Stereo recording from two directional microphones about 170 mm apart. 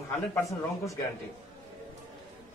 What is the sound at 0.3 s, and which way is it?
Speech, 15° left (ahead or behind).